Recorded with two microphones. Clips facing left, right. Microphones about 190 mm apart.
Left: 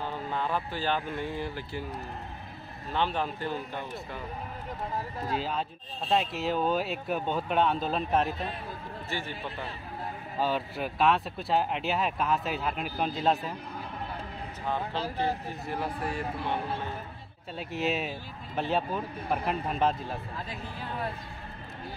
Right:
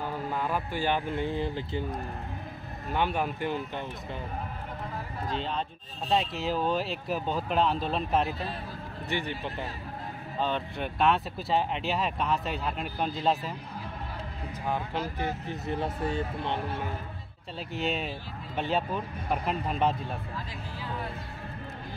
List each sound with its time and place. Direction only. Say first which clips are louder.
0.3 s speech: left 1 dB; 10° right (ahead or behind)
5.3 s speech: left 1 dB; 5° left (ahead or behind)
9.1 s speech: right 4 dB; 15° right (ahead or behind)
10.4 s speech: left 1 dB; 5° left (ahead or behind)
15.6 s speech: right 3 dB; 25° right (ahead or behind)
17.6 s speech: left 1 dB; centre (ahead or behind)